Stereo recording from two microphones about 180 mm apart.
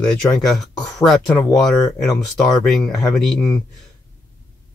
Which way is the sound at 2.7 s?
Centre (ahead or behind).